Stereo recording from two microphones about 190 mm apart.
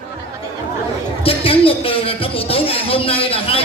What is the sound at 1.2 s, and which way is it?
Speech, 30° left (ahead or behind).